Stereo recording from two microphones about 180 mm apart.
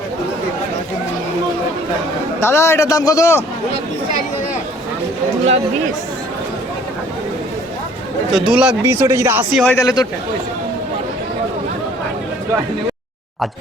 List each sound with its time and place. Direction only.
2.4 s a man's voice: 15° left (ahead or behind)
8.4 s speech: 5° right (ahead or behind)
9.5 s speech: centre (ahead or behind)
9.7 s speech: 20° left (ahead or behind)